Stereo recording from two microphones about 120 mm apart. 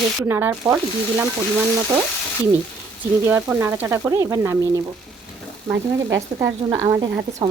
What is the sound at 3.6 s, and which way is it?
Speech, 20° right (ahead or behind).